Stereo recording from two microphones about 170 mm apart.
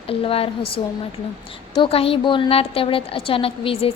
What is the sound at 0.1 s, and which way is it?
A woman's voice, 35° left (ahead or behind).